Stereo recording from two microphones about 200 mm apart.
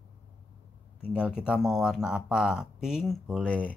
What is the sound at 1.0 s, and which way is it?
Speech, 5° right (ahead or behind).